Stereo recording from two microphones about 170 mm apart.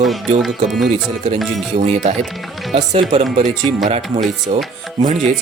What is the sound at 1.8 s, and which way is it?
Speech, 40° right (ahead or behind).